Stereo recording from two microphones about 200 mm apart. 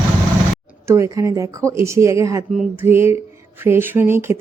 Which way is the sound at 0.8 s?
15° right (ahead or behind).